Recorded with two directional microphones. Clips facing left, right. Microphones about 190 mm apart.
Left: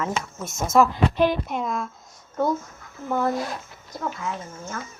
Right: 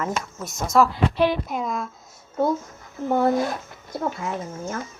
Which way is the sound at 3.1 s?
30° right (ahead or behind).